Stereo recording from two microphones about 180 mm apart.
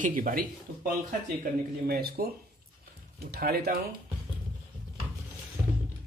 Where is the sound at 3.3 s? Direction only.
60° right (ahead or behind).